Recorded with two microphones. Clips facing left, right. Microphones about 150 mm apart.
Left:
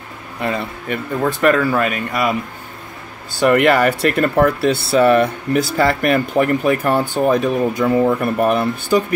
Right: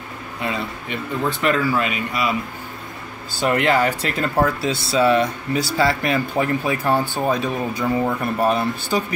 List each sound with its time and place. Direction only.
0.4 s speech: 50° left (ahead or behind)
3.4 s speech: 65° left (ahead or behind)